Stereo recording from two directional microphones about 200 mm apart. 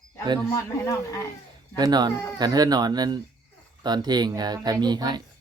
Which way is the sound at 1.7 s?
20° right (ahead or behind).